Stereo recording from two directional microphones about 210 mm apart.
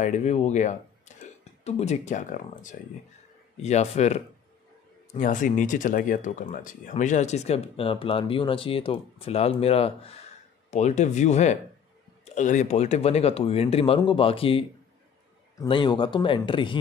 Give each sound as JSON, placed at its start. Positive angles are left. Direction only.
{"t": 0.0, "sound": "speech", "side_deg": 35}